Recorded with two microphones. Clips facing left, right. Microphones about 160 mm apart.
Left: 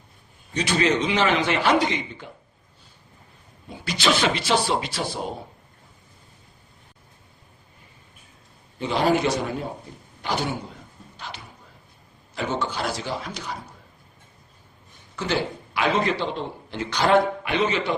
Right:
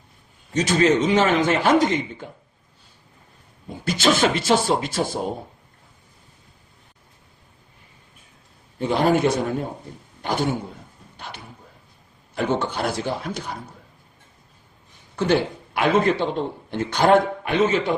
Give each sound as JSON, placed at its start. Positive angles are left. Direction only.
{"t": 0.5, "sound": "speech", "side_deg": -45}
{"t": 3.8, "sound": "speech", "side_deg": -45}
{"t": 8.8, "sound": "speech", "side_deg": -50}
{"t": 12.3, "sound": "speech", "side_deg": -55}
{"t": 15.1, "sound": "speech", "side_deg": -55}